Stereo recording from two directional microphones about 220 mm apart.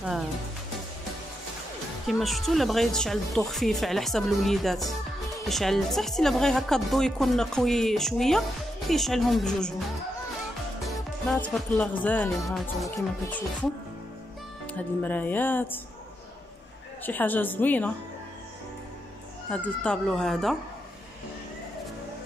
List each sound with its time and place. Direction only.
2.0 s speech: centre (ahead or behind)
10.8 s music: centre (ahead or behind)
11.3 s speech: 5° left (ahead or behind)
14.7 s speech: 5° left (ahead or behind)
17.0 s speech: 10° left (ahead or behind)
19.5 s speech: 5° left (ahead or behind)